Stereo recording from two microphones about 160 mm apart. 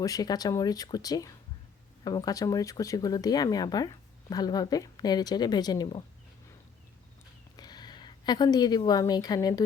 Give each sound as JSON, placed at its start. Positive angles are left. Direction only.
{"t": 0.0, "sound": "speech", "side_deg": 25}
{"t": 7.5, "sound": "a woman's voice", "side_deg": 25}